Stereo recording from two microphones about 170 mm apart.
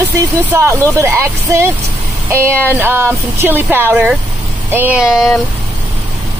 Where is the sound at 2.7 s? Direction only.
15° right (ahead or behind).